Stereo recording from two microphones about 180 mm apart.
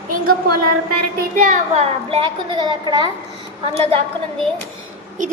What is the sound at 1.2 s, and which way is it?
A child's voice, 45° right (ahead or behind).